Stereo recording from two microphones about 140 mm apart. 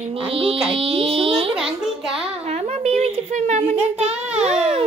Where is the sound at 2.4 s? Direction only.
50° right (ahead or behind).